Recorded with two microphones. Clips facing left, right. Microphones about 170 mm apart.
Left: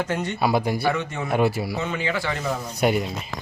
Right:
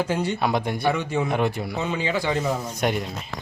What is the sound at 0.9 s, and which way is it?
Speech, 10° right (ahead or behind).